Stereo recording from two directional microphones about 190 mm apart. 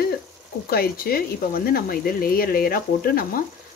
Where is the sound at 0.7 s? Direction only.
50° left (ahead or behind).